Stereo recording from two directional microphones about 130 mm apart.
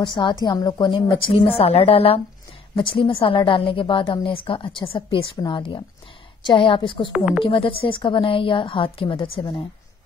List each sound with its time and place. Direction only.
0.0 s a woman's voice: 35° left (ahead or behind)
7.1 s speech: 10° right (ahead or behind)
7.4 s a woman's voice: 45° left (ahead or behind)